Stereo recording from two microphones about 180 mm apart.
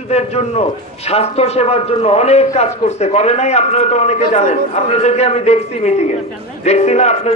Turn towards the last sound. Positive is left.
turn(degrees=40)  # may be behind; listen again after turning